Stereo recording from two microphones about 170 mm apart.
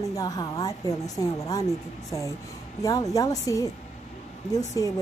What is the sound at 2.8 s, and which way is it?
Speech, 20° left (ahead or behind).